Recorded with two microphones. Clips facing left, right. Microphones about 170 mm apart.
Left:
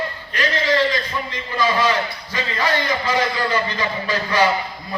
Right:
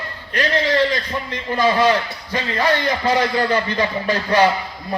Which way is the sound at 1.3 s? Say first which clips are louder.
Right 4 dB; 55° right (ahead or behind).